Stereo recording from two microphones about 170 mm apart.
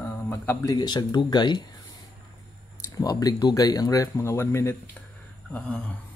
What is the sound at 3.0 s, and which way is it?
Speech, 20° left (ahead or behind).